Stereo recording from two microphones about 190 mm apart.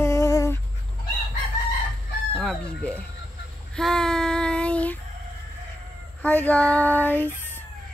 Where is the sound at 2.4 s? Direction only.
5° left (ahead or behind).